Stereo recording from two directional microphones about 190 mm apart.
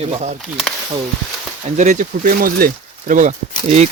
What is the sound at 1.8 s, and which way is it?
Speech, 40° right (ahead or behind).